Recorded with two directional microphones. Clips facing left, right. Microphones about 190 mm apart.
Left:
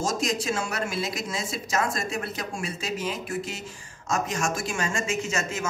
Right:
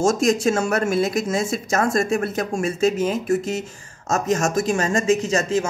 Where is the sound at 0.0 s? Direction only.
50° right (ahead or behind).